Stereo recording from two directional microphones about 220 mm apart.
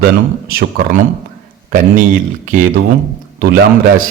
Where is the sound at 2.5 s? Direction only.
35° right (ahead or behind).